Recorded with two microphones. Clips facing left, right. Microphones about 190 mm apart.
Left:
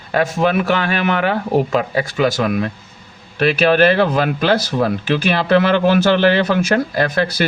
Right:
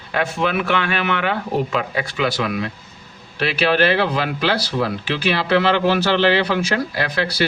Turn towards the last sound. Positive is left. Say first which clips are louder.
# left 5 dB
turn(degrees=50)  # may be behind; listen again after turning